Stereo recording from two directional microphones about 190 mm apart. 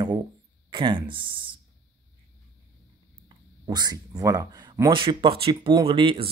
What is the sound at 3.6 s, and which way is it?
Speech, 20° right (ahead or behind).